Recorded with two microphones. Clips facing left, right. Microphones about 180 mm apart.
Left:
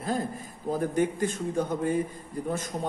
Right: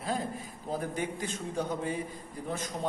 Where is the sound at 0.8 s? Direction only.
50° left (ahead or behind).